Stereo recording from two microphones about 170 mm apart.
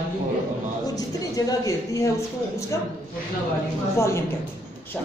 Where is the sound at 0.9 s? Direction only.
20° left (ahead or behind).